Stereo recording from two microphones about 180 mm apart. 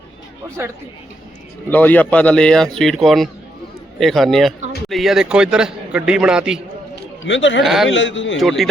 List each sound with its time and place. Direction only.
1.7 s a man's voice: 10° left (ahead or behind)
6.9 s a sound: 90° left
7.6 s a man's voice: centre (ahead or behind)
7.9 s a man's voice: 90° left
8.4 s a man's voice: centre (ahead or behind)